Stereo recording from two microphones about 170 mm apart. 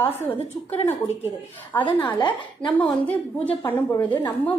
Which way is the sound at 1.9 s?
25° left (ahead or behind).